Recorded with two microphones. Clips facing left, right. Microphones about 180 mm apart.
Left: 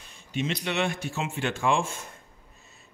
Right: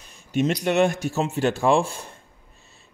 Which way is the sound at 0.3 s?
45° right (ahead or behind).